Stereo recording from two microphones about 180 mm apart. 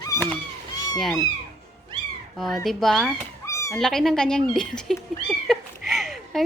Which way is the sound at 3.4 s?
15° left (ahead or behind).